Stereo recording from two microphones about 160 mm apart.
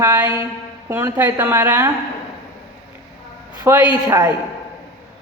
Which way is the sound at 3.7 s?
20° right (ahead or behind).